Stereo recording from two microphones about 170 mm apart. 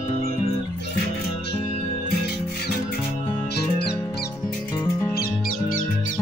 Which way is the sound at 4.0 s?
20° left (ahead or behind).